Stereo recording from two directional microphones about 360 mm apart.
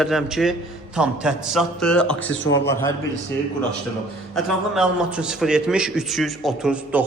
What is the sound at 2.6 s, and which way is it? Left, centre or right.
Speech, centre.